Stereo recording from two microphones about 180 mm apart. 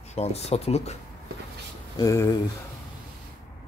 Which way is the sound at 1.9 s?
15° left (ahead or behind).